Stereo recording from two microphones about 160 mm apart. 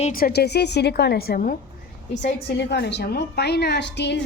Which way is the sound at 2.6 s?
90° left.